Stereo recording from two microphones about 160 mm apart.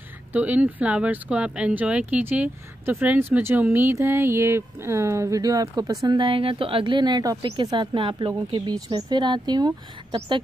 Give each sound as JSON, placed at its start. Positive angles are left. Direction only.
{"t": 0.3, "sound": "a woman's voice", "side_deg": -10}